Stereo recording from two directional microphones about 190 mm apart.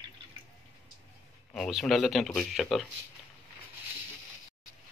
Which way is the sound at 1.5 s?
Centre (ahead or behind).